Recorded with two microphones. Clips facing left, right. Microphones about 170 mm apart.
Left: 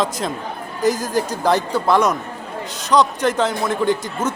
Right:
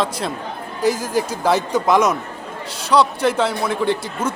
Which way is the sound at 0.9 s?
40° left (ahead or behind).